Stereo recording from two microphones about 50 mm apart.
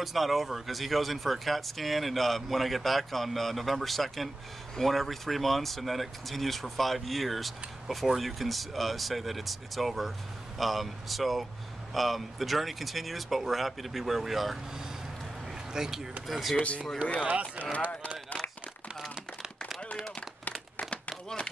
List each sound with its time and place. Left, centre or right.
0.0 s speech: centre
15.7 s speech: centre
16.5 s speech: left
17.2 s speech: right